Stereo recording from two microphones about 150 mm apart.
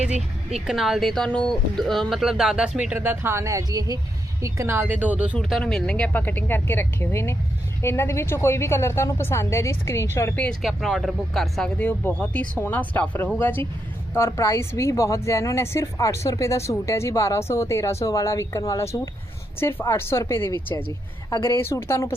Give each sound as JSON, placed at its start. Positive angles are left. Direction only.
{"t": 0.0, "sound": "speech", "side_deg": -5}
{"t": 5.4, "sound": "speech", "side_deg": 0}
{"t": 10.6, "sound": "speech", "side_deg": 0}